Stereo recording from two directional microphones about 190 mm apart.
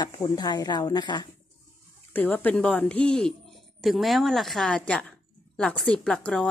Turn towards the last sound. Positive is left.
turn(degrees=5)  # may be behind; listen again after turning